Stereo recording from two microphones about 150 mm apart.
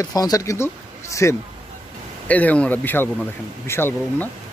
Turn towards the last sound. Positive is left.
turn(degrees=15)  # may be behind; listen again after turning